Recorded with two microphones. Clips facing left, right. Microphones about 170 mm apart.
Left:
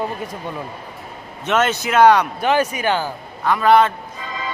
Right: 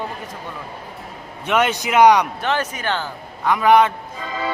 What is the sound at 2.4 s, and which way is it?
Speech, 10° left (ahead or behind).